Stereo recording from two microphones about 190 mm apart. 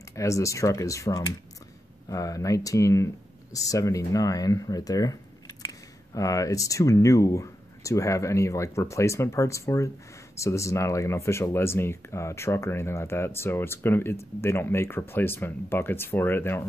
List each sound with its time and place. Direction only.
0.1 s speech: 15° left (ahead or behind)